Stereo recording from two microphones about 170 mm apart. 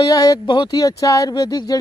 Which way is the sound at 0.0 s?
20° left (ahead or behind).